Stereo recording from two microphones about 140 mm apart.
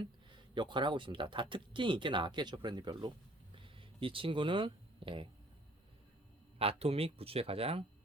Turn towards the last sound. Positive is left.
turn(degrees=-45)  # may be behind; listen again after turning